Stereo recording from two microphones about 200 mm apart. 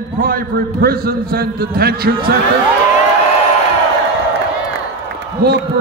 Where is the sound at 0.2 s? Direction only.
45° right (ahead or behind).